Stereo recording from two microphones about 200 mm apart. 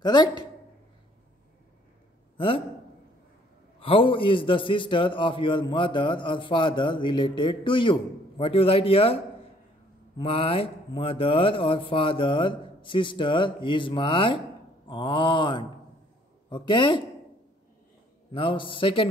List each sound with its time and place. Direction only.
0.0 s a man's voice: 20° left (ahead or behind)
2.3 s a man's voice: 25° left (ahead or behind)
3.8 s a man's voice: 25° left (ahead or behind)
18.3 s a man's voice: 25° left (ahead or behind)